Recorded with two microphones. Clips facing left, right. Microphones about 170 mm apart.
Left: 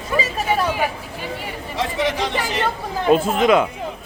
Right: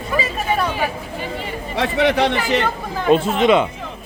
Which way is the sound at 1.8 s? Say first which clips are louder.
Right 5 dB; 65° right (ahead or behind).